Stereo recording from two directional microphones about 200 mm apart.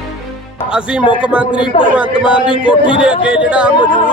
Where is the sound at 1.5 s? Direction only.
25° left (ahead or behind).